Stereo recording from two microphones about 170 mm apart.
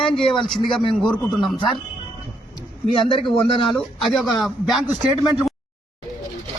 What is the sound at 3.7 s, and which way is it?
Speech, centre (ahead or behind).